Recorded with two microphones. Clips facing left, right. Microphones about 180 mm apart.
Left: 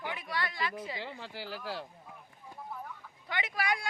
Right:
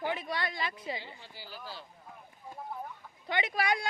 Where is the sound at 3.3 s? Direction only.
25° right (ahead or behind).